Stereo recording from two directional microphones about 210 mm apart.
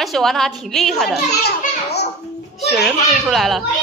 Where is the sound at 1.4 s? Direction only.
50° left (ahead or behind).